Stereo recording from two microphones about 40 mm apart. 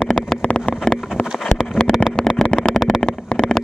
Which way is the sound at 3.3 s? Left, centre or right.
Left.